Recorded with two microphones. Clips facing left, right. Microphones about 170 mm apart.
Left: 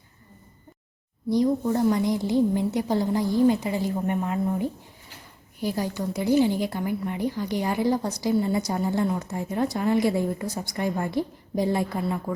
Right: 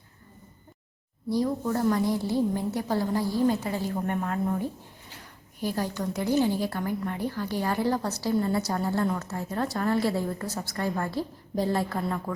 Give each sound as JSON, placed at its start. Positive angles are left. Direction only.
{"t": 1.3, "sound": "a woman's voice", "side_deg": 20}